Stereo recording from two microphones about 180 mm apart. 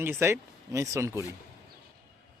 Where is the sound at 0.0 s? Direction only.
15° right (ahead or behind).